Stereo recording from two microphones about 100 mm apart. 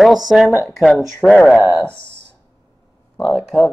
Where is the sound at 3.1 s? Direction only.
5° left (ahead or behind).